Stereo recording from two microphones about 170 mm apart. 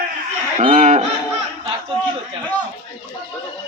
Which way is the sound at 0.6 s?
45° right (ahead or behind).